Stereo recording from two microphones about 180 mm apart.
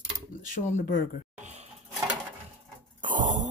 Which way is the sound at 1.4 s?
40° right (ahead or behind).